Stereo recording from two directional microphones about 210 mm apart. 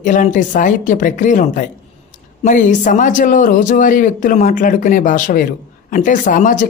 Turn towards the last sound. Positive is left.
turn(degrees=40)  # may be behind; listen again after turning